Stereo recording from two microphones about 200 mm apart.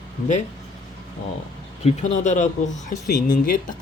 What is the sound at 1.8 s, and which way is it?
Speech, 35° left (ahead or behind).